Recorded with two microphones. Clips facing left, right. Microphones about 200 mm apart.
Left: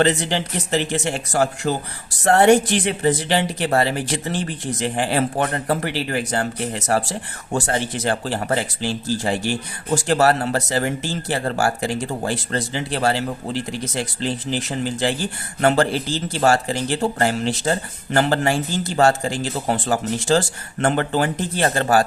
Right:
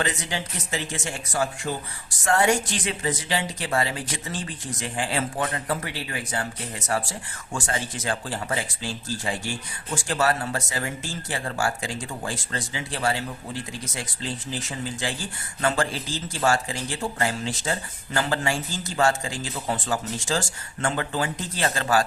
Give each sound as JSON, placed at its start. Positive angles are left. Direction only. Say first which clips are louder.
{"t": 0.0, "sound": "speech", "louder": "left 9 dB", "side_deg": 65}